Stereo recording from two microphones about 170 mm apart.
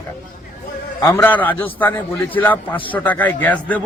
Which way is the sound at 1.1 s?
15° left (ahead or behind).